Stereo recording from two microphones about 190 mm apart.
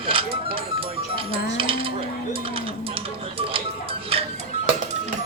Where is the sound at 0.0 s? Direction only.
30° right (ahead or behind).